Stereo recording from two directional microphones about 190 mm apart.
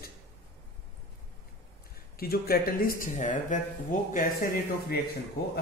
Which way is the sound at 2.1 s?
55° left (ahead or behind).